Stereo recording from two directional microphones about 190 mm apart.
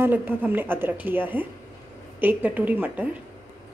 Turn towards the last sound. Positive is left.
turn(degrees=-10)  # may be behind; listen again after turning